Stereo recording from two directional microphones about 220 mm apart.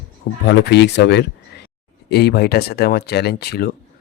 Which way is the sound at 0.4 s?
50° left (ahead or behind).